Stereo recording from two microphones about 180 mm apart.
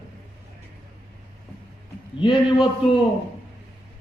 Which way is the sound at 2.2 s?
25° left (ahead or behind).